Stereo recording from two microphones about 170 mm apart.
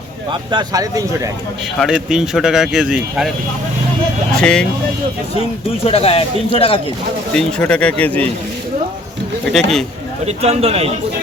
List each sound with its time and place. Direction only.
0.3 s speech: 25° right (ahead or behind)
1.8 s speech: 5° right (ahead or behind)
4.4 s speech: 5° left (ahead or behind)
5.8 s a man's voice: 35° left (ahead or behind)
7.3 s speech: 5° left (ahead or behind)
9.5 s speech: centre (ahead or behind)
10.2 s speech: 40° right (ahead or behind)